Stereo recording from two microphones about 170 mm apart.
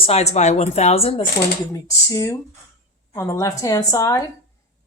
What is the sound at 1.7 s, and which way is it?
A woman's voice, 20° left (ahead or behind).